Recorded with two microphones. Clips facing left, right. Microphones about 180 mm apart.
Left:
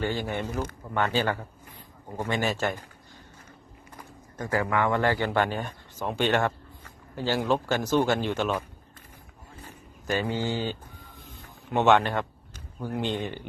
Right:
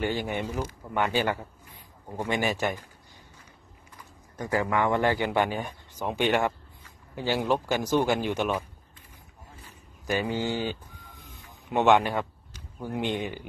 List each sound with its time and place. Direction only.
0.0 s a man's voice: 15° right (ahead or behind)
4.4 s a man's voice: 20° right (ahead or behind)
10.0 s a man's voice: 15° right (ahead or behind)
11.9 s a man's voice: 10° right (ahead or behind)